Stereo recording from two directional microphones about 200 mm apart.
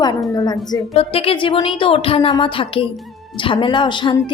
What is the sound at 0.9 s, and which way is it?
Speech, 30° left (ahead or behind).